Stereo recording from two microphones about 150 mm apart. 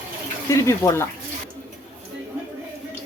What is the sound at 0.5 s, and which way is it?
Speech, 20° left (ahead or behind).